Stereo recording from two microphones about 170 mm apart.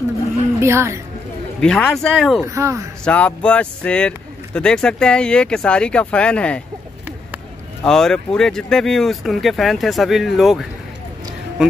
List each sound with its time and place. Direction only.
0.6 s speech: 15° right (ahead or behind)
1.6 s speech: 5° left (ahead or behind)
2.4 s speech: 15° right (ahead or behind)
3.1 s speech: 10° left (ahead or behind)
7.8 s speech: 5° left (ahead or behind)